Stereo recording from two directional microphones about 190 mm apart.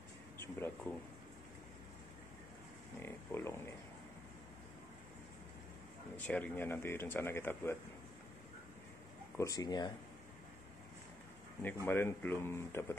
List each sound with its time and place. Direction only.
3.0 s a sound: 10° left (ahead or behind)
6.1 s speech: 10° left (ahead or behind)
9.4 s speech: 20° left (ahead or behind)
11.6 s speech: 10° left (ahead or behind)